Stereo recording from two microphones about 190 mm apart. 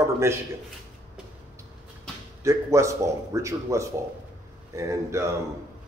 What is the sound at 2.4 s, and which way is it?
Speech, 15° right (ahead or behind).